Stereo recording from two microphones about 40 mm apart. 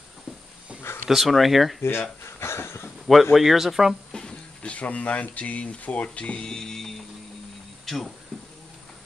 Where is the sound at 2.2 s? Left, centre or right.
Left.